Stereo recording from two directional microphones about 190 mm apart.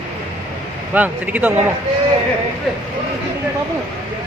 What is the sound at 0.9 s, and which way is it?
Speech, 10° right (ahead or behind).